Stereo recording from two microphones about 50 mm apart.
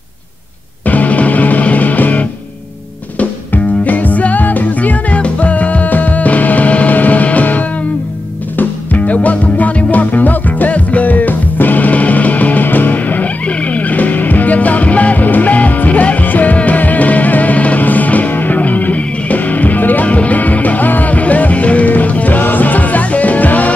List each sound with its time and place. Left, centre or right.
0.8 s music: left